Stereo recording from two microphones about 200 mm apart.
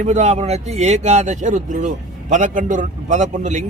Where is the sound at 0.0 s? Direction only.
35° right (ahead or behind).